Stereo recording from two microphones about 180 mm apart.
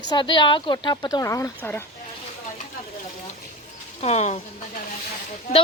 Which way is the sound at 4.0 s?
40° left (ahead or behind).